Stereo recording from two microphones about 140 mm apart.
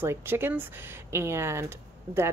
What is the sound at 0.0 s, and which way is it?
Speech, 15° right (ahead or behind).